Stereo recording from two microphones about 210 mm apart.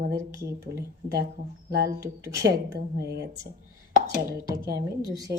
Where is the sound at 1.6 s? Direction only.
45° right (ahead or behind).